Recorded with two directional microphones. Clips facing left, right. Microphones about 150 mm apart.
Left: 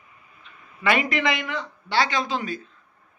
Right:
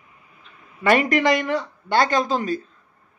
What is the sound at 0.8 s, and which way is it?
A man's voice, 45° right (ahead or behind).